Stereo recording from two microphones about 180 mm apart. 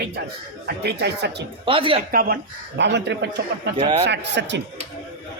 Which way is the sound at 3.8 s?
30° right (ahead or behind).